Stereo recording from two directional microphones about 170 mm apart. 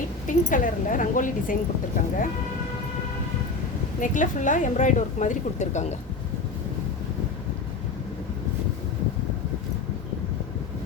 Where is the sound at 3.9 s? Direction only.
50° left (ahead or behind).